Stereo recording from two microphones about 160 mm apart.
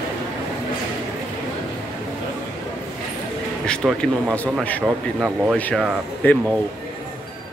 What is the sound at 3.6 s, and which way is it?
Speech, 5° left (ahead or behind).